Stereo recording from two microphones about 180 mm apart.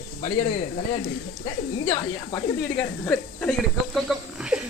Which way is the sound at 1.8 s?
25° left (ahead or behind).